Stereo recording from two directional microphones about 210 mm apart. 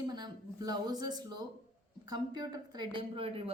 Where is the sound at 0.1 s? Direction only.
20° right (ahead or behind).